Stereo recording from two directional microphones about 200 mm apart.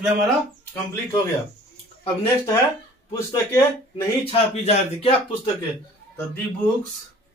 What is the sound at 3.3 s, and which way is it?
Speech, 15° left (ahead or behind).